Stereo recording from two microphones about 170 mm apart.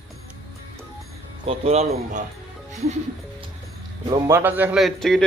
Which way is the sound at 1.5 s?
35° right (ahead or behind).